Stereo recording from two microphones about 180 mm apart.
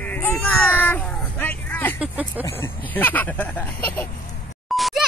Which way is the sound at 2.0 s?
10° right (ahead or behind).